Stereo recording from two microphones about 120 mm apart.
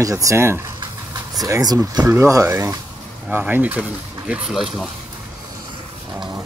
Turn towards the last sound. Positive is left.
turn(degrees=0)  # may be behind; listen again after turning